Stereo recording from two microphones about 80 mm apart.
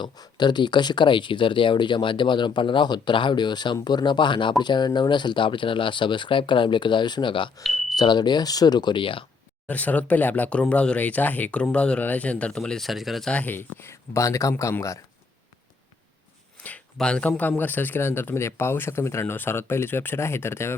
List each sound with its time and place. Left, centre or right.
0.2 s speech: left
4.6 s speech: left
7.9 s speech: left
9.6 s speech: centre
13.3 s speech: left
16.6 s a sound: centre
17.0 s speech: centre; by 20.7 s left